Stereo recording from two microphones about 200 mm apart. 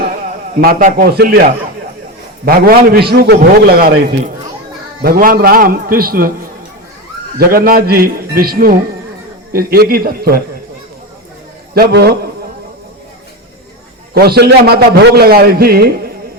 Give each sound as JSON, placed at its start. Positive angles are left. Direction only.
{"t": 0.5, "sound": "a man's voice", "side_deg": -45}
{"t": 2.4, "sound": "a man's voice", "side_deg": -45}
{"t": 7.3, "sound": "a man's voice", "side_deg": -45}
{"t": 11.7, "sound": "a man's voice", "side_deg": -50}
{"t": 14.1, "sound": "a man's voice", "side_deg": -50}